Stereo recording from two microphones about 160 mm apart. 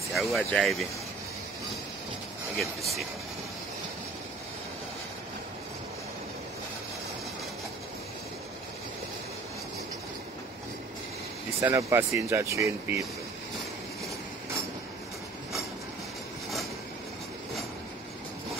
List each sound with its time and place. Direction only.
0.1 s speech: centre (ahead or behind)
2.5 s speech: centre (ahead or behind)
11.6 s speech: 15° right (ahead or behind)